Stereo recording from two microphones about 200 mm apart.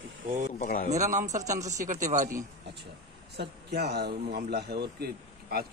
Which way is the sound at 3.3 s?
55° right (ahead or behind).